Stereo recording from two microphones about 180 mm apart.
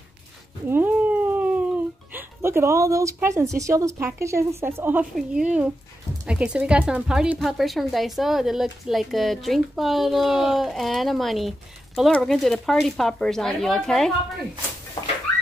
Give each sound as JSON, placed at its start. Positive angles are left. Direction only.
{"t": 0.7, "sound": "cat", "side_deg": -10}
{"t": 2.1, "sound": "a woman's voice", "side_deg": -15}